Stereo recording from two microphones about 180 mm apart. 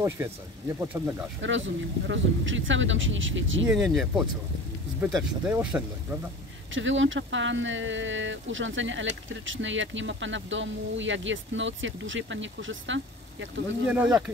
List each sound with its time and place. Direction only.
0.2 s speech: 15° right (ahead or behind)
1.4 s speech: 90° right
3.6 s speech: centre (ahead or behind)
6.7 s speech: 90° right